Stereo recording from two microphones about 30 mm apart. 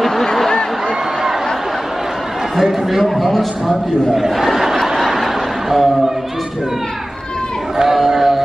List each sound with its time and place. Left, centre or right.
0.0 s a sound: centre
2.5 s a man's voice: centre
4.1 s speech: centre
4.8 s snicker: centre
7.9 s music: centre